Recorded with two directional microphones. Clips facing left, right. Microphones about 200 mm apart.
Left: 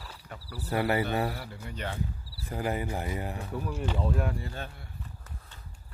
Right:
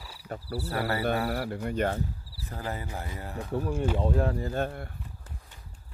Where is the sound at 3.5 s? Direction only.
30° right (ahead or behind); by 4.8 s 50° right (ahead or behind).